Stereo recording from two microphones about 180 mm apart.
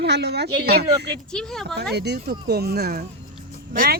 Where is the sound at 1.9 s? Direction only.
65° right (ahead or behind).